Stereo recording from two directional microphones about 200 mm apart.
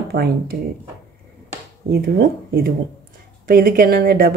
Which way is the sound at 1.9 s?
50° right (ahead or behind).